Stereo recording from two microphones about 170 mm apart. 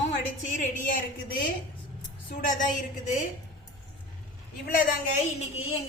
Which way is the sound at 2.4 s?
50° left (ahead or behind).